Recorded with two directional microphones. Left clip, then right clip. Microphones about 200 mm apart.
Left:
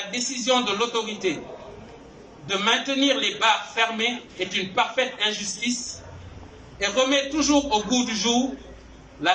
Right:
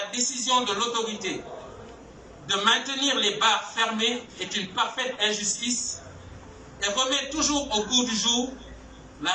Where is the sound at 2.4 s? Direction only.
40° left (ahead or behind).